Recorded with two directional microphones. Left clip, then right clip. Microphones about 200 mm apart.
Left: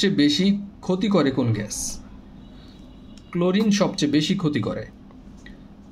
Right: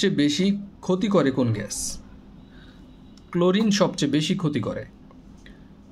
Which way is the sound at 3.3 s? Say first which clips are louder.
Right 1 dB; 25° right (ahead or behind).